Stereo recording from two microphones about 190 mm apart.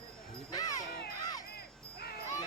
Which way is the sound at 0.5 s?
20° left (ahead or behind).